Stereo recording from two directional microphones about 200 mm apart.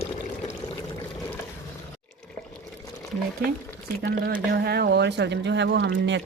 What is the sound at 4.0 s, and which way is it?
Speech, 50° right (ahead or behind).